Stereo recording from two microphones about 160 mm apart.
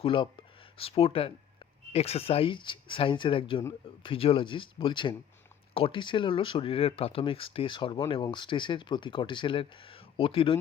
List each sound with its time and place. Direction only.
0.0 s speech: 35° left (ahead or behind)